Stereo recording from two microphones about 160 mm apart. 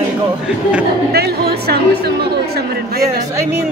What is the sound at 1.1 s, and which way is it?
Speech, 80° right.